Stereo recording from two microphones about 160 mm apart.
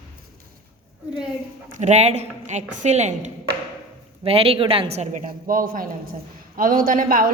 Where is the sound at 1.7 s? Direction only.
45° right (ahead or behind).